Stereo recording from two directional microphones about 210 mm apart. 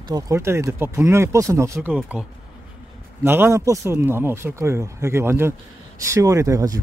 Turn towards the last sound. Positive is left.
turn(degrees=-15)  # may be behind; listen again after turning